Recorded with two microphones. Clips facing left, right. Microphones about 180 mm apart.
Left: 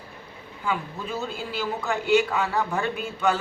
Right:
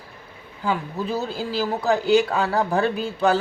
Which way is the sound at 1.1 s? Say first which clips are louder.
Right 4 dB; 35° right (ahead or behind).